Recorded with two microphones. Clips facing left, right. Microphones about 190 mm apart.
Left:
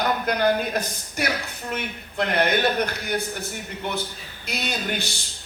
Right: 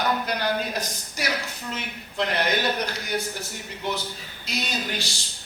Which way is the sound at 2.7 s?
55° left (ahead or behind).